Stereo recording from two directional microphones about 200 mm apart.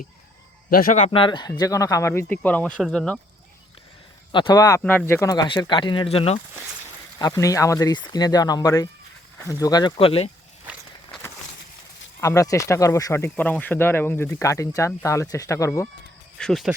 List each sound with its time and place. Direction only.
0.7 s a man's voice: 45° left (ahead or behind)
1.1 s speech: 25° left (ahead or behind); by 3.2 s centre (ahead or behind)
4.3 s speech: 25° left (ahead or behind)
7.2 s speech: 15° left (ahead or behind)
12.2 s speech: 15° left (ahead or behind)
16.4 s speech: centre (ahead or behind)